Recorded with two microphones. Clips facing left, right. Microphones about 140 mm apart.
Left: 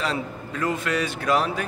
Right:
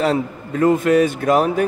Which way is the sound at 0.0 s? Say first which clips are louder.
Right 9 dB; 55° right (ahead or behind).